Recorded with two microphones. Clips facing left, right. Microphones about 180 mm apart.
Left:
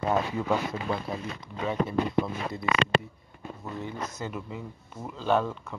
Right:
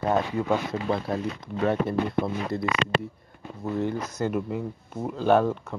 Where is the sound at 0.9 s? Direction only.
60° right (ahead or behind).